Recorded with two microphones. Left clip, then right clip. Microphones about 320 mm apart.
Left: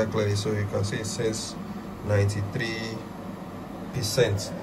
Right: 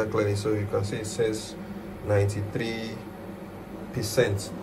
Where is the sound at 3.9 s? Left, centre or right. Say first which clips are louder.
Even; centre.